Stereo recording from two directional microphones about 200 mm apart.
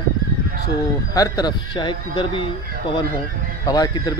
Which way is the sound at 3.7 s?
20° left (ahead or behind).